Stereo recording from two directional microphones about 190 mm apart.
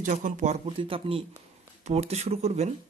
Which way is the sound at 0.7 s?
30° right (ahead or behind).